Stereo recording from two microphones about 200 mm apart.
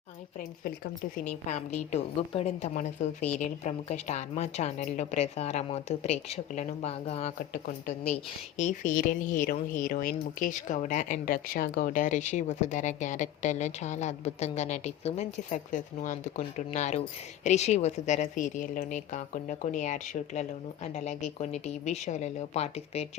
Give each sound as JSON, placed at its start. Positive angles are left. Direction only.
{"t": 1.5, "sound": "speech", "side_deg": 35}